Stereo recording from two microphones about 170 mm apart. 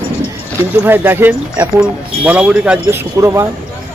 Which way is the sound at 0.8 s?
10° right (ahead or behind).